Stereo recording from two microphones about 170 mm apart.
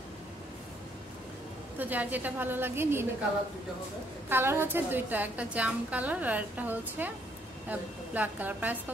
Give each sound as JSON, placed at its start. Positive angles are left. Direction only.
{"t": 1.8, "sound": "a woman's voice", "side_deg": -10}
{"t": 4.3, "sound": "a woman's voice", "side_deg": -15}